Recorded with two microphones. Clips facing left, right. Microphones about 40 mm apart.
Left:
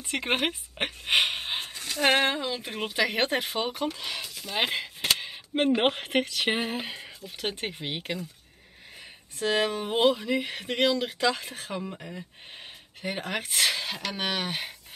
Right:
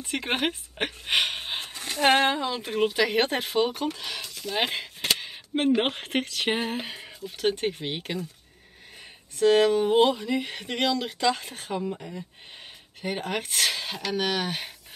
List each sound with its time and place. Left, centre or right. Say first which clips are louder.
0.1 s speech: even; centre
2.0 s speech: right 2 dB; centre
9.4 s speech: right 7 dB; centre
12.0 s speech: right 2 dB; centre
13.0 s speech: right 2 dB; centre